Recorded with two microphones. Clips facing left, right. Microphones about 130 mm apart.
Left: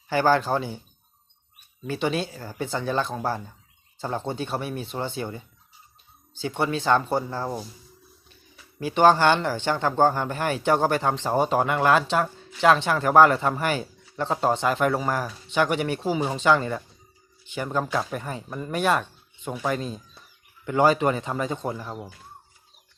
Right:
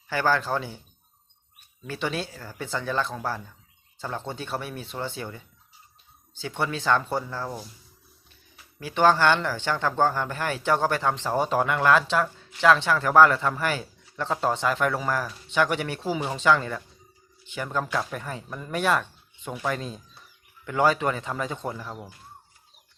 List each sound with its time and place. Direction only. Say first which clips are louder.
0.1 s speech: left 4 dB; 25° left (ahead or behind)
1.9 s speech: left 4 dB; 15° left (ahead or behind)
6.4 s speech: left 3 dB; 10° left (ahead or behind)
8.8 s speech: left 2 dB; 15° left (ahead or behind)